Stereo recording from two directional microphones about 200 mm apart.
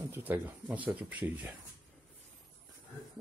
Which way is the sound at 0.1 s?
10° right (ahead or behind).